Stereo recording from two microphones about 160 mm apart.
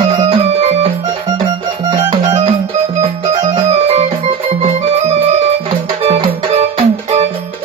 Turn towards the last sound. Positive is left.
turn(degrees=-40)  # may be behind; listen again after turning